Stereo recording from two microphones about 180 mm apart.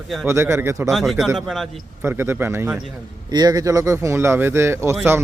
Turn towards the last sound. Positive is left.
turn(degrees=-15)  # may be behind; listen again after turning